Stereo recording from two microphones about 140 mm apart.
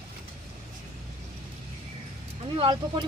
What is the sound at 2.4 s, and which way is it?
Speech, 40° right (ahead or behind).